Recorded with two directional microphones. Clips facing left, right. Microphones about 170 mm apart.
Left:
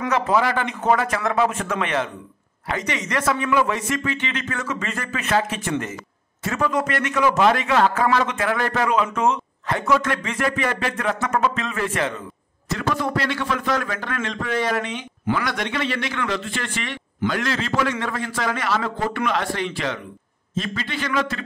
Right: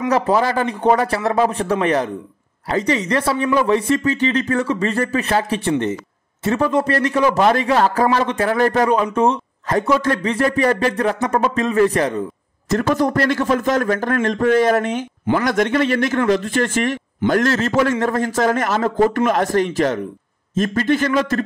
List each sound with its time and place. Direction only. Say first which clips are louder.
0.1 s a man's voice: right 3 dB; 35° right (ahead or behind)